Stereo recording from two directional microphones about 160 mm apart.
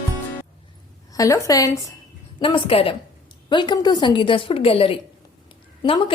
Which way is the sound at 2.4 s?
35° left (ahead or behind).